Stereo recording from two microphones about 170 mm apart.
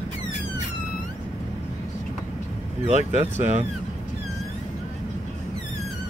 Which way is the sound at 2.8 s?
40° right (ahead or behind).